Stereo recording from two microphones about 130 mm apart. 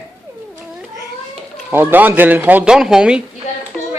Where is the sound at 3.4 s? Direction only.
65° left (ahead or behind).